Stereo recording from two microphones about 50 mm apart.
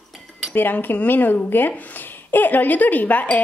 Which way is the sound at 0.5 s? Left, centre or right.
Left.